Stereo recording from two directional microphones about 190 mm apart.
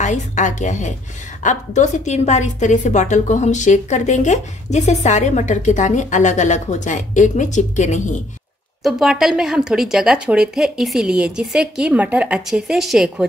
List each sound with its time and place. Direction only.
0.0 s a woman's voice: 40° left (ahead or behind)
8.8 s a woman's voice: centre (ahead or behind)